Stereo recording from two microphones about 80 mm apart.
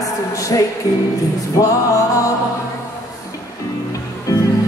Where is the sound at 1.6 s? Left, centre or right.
Left.